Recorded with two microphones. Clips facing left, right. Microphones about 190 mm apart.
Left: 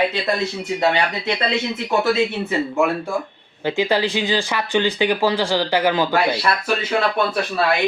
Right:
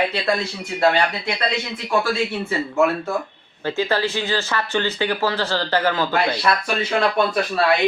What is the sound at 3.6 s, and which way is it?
Speech, 15° left (ahead or behind).